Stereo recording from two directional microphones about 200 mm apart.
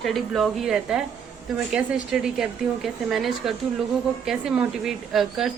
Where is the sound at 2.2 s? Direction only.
Centre (ahead or behind).